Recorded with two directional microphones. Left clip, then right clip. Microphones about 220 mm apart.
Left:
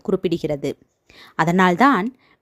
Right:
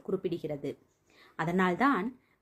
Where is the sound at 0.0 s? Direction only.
45° left (ahead or behind).